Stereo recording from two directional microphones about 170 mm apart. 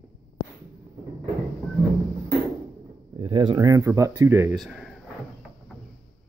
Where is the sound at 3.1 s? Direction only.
30° right (ahead or behind); by 4.5 s 15° right (ahead or behind).